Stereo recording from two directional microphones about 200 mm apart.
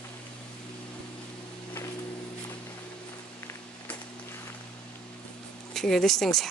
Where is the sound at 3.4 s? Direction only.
10° left (ahead or behind).